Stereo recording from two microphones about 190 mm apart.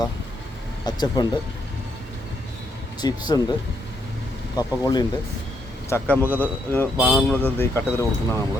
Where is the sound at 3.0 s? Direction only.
20° left (ahead or behind).